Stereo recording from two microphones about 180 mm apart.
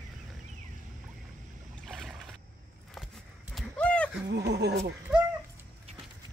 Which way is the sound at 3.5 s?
5° left (ahead or behind).